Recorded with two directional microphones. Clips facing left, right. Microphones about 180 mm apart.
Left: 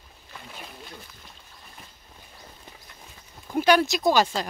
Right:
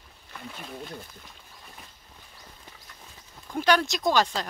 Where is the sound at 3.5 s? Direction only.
10° left (ahead or behind).